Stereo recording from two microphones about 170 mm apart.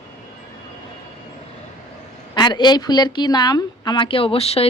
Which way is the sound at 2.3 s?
25° left (ahead or behind).